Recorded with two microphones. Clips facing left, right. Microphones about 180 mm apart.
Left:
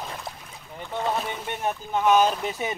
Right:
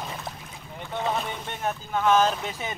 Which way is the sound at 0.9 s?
Centre (ahead or behind).